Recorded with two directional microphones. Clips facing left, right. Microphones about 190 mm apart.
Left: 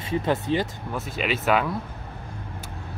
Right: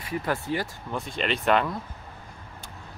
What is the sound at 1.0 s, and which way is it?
Speech, 5° left (ahead or behind).